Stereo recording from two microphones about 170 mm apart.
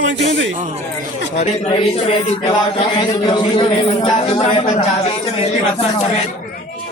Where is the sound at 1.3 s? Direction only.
45° left (ahead or behind).